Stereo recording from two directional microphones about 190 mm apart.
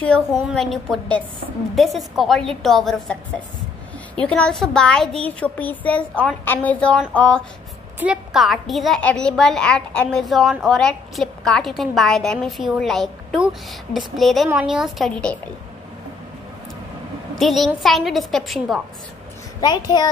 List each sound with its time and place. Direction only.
0.0 s a woman's voice: 5° left (ahead or behind)
17.4 s a woman's voice: centre (ahead or behind)
19.6 s a child's voice: 20° left (ahead or behind)